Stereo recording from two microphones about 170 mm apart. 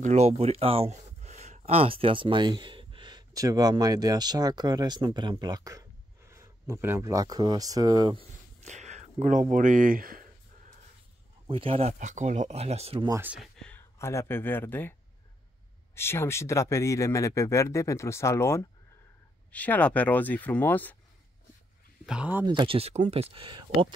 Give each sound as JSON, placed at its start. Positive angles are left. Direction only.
{"t": 0.0, "sound": "speech", "side_deg": -40}
{"t": 8.6, "sound": "speech", "side_deg": -45}
{"t": 11.4, "sound": "speech", "side_deg": -30}
{"t": 12.0, "sound": "speech", "side_deg": -45}
{"t": 13.1, "sound": "speech", "side_deg": -10}
{"t": 13.4, "sound": "speech", "side_deg": 5}
{"t": 22.0, "sound": "speech", "side_deg": -5}
{"t": 22.5, "sound": "speech", "side_deg": -30}